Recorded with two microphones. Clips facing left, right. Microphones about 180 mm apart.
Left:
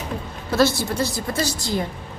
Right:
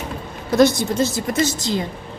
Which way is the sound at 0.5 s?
20° right (ahead or behind).